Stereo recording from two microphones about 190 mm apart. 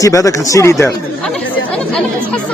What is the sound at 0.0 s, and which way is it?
Speech, 15° left (ahead or behind).